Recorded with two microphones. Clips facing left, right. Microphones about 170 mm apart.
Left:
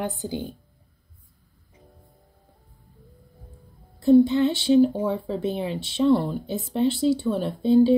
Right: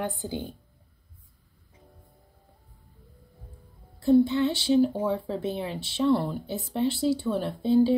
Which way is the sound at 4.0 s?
15° left (ahead or behind).